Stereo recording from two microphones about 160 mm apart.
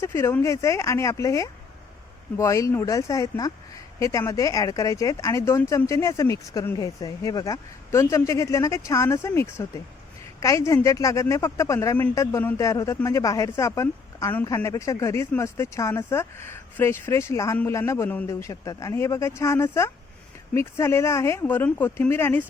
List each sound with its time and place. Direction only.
0.0 s a man's voice: 15° left (ahead or behind)